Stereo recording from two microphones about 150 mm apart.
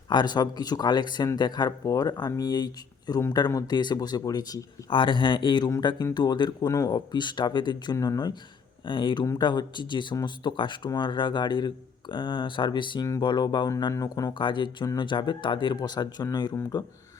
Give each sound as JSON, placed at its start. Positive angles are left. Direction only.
{"t": 0.1, "sound": "speech", "side_deg": 30}